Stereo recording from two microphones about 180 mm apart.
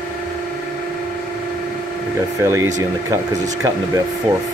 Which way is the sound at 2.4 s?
15° right (ahead or behind).